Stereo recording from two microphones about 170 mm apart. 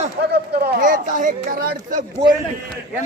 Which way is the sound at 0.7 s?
50° right (ahead or behind).